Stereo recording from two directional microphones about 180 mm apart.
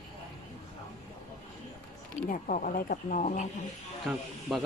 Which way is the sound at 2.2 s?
50° left (ahead or behind).